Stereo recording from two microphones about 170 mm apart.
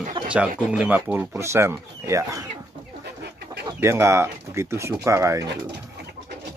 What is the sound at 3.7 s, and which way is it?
Speech, 15° right (ahead or behind).